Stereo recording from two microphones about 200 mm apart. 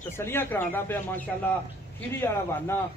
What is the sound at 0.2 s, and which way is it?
Speech, 10° left (ahead or behind).